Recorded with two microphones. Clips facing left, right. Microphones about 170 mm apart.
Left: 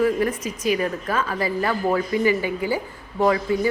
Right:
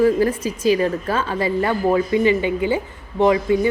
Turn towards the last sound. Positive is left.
turn(degrees=-20)  # may be behind; listen again after turning